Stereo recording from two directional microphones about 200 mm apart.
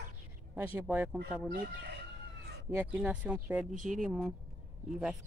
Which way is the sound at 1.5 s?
50° right (ahead or behind).